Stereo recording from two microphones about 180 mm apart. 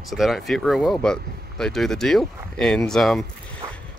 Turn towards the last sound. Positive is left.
turn(degrees=0)  # may be behind; listen again after turning